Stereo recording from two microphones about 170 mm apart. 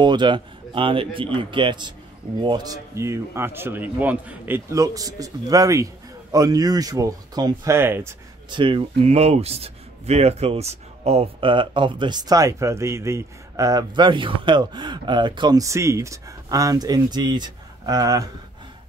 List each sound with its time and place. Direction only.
0.0 s a man's voice: 25° right (ahead or behind)
8.5 s speech: 30° right (ahead or behind)